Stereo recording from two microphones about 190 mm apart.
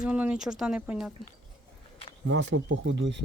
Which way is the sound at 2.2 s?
80° right.